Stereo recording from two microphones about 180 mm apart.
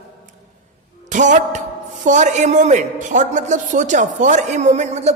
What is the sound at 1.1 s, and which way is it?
A man's voice, 45° right (ahead or behind).